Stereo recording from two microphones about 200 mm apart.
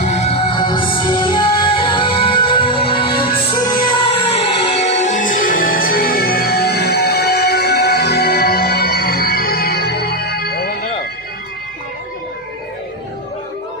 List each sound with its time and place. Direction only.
0.0 s music: 30° left (ahead or behind); by 10.8 s 50° left (ahead or behind)